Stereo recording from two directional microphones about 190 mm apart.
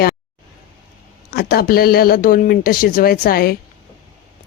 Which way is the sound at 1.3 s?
55° left (ahead or behind).